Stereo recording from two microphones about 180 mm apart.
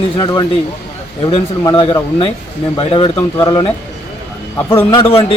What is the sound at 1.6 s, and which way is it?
A man's voice, 25° left (ahead or behind).